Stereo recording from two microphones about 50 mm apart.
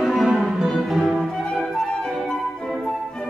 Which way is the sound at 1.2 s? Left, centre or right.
Centre.